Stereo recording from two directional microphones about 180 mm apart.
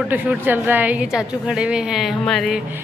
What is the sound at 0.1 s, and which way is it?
A woman's voice, 10° right (ahead or behind).